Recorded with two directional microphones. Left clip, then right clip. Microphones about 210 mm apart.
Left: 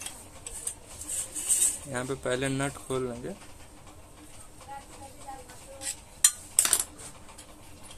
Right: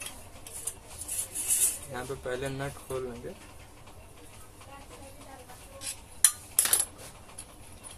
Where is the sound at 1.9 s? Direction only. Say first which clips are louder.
Left 7 dB; 40° left (ahead or behind).